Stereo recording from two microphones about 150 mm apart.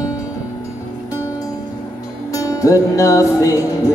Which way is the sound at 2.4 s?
20° left (ahead or behind).